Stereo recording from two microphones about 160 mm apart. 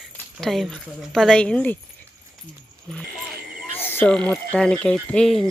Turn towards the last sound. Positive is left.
turn(degrees=5)  # may be behind; listen again after turning